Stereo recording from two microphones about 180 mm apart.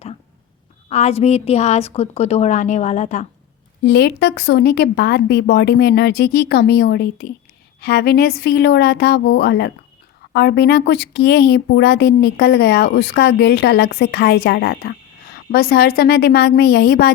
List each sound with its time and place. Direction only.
0.9 s a woman's voice: 40° left (ahead or behind)
3.8 s speech: 70° left (ahead or behind)